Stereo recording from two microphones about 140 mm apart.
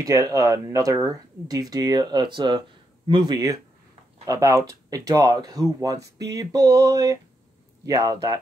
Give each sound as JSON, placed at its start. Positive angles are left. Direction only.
{"t": 0.0, "sound": "speech", "side_deg": -25}